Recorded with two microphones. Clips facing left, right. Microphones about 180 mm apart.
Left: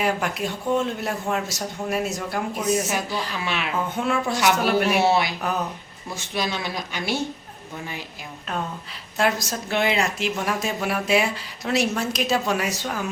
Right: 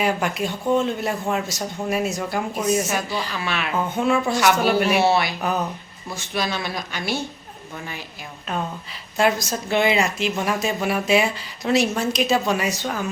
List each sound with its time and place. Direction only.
0.0 s speech: centre (ahead or behind)
3.4 s speech: 15° left (ahead or behind)
3.9 s speech: centre (ahead or behind)
5.0 s speech: 15° left (ahead or behind)
6.3 s speech: 15° left (ahead or behind)
8.4 s speech: centre (ahead or behind)